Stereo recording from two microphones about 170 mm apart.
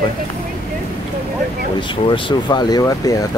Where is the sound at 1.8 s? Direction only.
30° left (ahead or behind).